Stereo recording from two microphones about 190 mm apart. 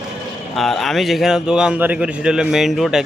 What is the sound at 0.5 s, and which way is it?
A man's voice, centre (ahead or behind).